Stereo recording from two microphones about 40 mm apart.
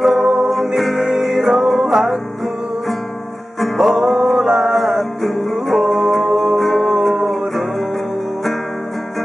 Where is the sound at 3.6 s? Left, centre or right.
Centre.